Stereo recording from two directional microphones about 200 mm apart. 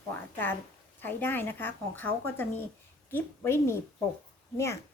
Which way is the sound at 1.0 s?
10° left (ahead or behind).